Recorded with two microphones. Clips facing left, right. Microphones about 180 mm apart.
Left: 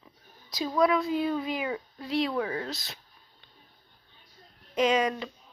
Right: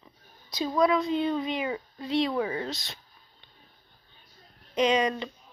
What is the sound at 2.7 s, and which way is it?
Speech, 5° left (ahead or behind).